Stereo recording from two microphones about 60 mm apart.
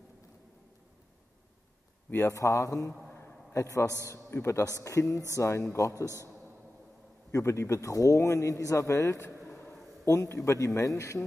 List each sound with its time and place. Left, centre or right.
2.2 s a man's voice: left
4.3 s speech: left
4.7 s a man's voice: left
7.3 s a man's voice: left